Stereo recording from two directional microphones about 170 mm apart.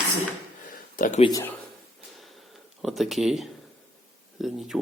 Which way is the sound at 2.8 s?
Centre (ahead or behind).